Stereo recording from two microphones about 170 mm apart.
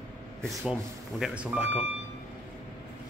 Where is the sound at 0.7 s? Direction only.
5° right (ahead or behind).